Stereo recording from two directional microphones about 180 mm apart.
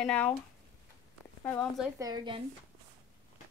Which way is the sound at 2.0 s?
25° right (ahead or behind).